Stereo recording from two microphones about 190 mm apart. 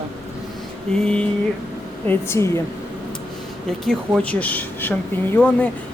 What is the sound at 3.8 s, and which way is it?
Speech, 5° left (ahead or behind).